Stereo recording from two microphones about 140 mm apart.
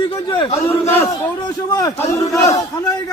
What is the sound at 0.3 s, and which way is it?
Speech, 35° left (ahead or behind).